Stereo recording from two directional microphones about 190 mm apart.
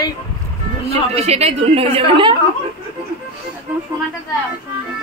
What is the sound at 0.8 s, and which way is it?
A woman's voice, 35° right (ahead or behind).